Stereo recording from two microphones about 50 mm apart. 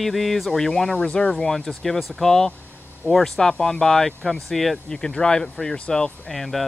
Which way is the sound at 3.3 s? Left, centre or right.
Centre.